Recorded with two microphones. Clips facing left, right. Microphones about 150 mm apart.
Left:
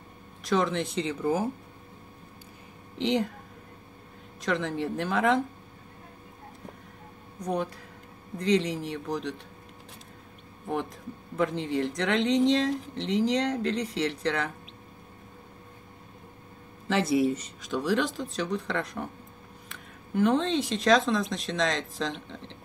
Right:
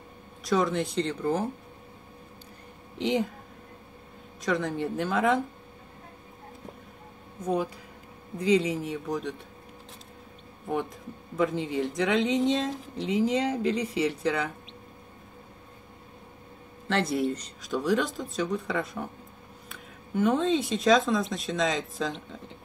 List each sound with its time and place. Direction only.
0.5 s speech: centre (ahead or behind)
3.0 s speech: centre (ahead or behind)
4.4 s speech: centre (ahead or behind)
7.3 s speech: 5° right (ahead or behind)
11.3 s speech: centre (ahead or behind)
16.8 s speech: 5° left (ahead or behind)